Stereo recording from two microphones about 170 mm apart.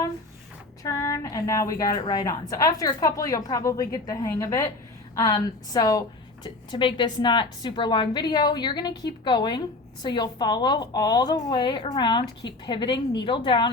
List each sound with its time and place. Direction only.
0.8 s a woman's voice: 20° left (ahead or behind)